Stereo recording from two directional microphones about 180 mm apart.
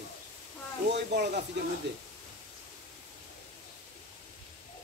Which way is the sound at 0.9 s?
70° right (ahead or behind).